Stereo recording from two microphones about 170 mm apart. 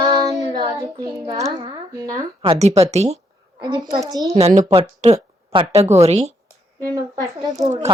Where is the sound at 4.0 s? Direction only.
20° right (ahead or behind).